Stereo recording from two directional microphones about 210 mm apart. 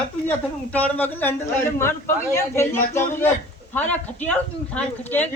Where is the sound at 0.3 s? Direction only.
5° left (ahead or behind).